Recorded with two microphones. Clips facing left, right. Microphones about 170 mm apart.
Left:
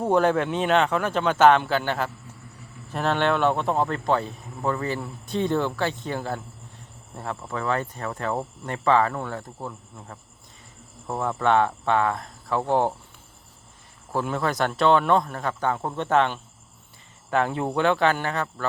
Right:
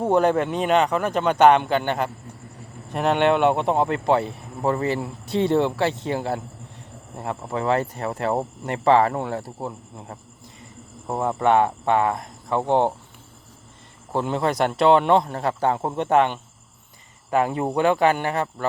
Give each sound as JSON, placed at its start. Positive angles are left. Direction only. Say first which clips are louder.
{"t": 0.1, "sound": "speech", "louder": "right 1 dB", "side_deg": -10}
{"t": 3.0, "sound": "speech", "louder": "right 4 dB", "side_deg": -15}
{"t": 5.2, "sound": "speech", "louder": "right 4 dB", "side_deg": -75}
{"t": 5.5, "sound": "speech", "louder": "right 5 dB", "side_deg": -30}
{"t": 12.1, "sound": "speech", "louder": "right 2 dB", "side_deg": -20}
{"t": 14.1, "sound": "speech", "louder": "right 3 dB", "side_deg": -25}
{"t": 17.3, "sound": "speech", "louder": "right 2 dB", "side_deg": -5}